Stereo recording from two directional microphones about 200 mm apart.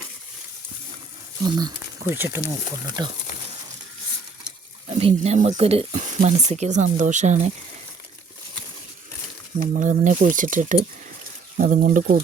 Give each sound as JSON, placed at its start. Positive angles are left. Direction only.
{"t": 1.5, "sound": "speech", "side_deg": -20}
{"t": 4.9, "sound": "speech", "side_deg": -30}
{"t": 9.6, "sound": "speech", "side_deg": -40}